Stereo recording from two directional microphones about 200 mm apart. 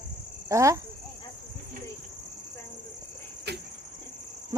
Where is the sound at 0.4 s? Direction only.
15° right (ahead or behind).